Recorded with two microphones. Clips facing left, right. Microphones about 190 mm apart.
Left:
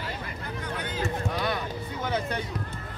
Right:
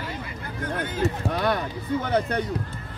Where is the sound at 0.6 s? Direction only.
50° right (ahead or behind).